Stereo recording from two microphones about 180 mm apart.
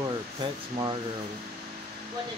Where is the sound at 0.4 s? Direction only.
25° right (ahead or behind).